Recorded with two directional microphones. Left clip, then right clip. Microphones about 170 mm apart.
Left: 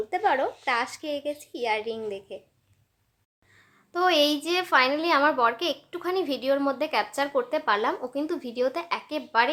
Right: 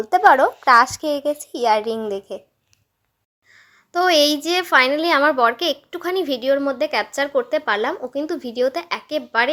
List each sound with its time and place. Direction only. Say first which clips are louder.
0.1 s a woman's voice: right 13 dB; 40° right (ahead or behind)
3.5 s a woman's voice: right 9 dB; 30° right (ahead or behind)